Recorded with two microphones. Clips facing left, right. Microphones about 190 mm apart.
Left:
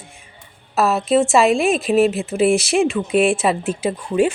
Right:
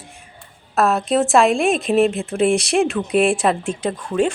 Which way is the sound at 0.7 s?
5° left (ahead or behind).